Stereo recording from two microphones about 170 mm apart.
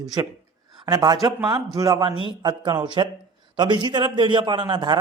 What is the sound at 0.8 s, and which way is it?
Speech, 25° right (ahead or behind).